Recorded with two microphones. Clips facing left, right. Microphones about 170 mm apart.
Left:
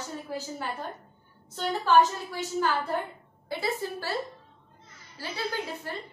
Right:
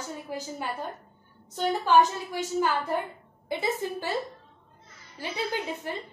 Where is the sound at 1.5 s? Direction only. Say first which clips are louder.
Right 1 dB; 15° right (ahead or behind).